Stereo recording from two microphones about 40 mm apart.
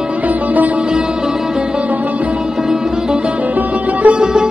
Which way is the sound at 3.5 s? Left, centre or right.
Right.